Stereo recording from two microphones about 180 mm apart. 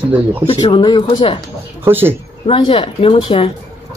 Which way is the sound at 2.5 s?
30° left (ahead or behind).